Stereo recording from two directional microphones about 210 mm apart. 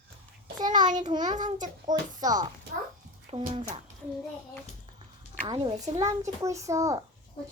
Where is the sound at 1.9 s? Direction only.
20° right (ahead or behind).